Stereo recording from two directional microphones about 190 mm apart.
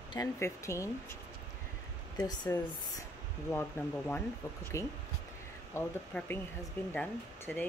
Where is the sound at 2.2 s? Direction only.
20° left (ahead or behind).